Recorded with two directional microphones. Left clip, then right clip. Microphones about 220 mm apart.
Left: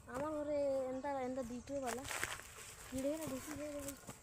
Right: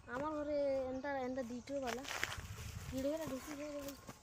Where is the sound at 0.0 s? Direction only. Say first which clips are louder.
Even; 25° right (ahead or behind).